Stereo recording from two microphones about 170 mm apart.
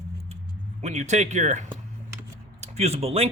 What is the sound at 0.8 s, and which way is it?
Speech, 45° right (ahead or behind).